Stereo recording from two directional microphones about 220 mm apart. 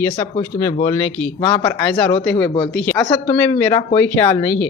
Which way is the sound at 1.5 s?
15° left (ahead or behind).